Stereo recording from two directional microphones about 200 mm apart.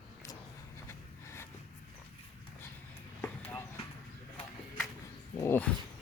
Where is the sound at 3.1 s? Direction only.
5° left (ahead or behind).